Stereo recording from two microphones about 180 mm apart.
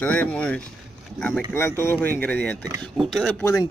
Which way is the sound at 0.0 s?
10° left (ahead or behind).